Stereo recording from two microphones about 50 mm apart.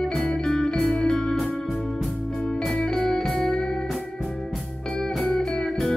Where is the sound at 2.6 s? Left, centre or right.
Centre.